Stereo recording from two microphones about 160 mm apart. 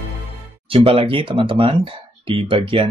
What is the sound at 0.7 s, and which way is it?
Speech, 35° right (ahead or behind).